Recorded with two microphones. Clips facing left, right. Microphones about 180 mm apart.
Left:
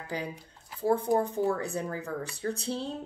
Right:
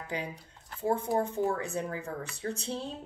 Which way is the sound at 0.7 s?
35° left (ahead or behind).